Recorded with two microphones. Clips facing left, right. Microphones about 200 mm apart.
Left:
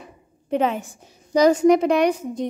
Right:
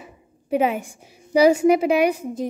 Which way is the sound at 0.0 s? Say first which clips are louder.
Even; 10° right (ahead or behind).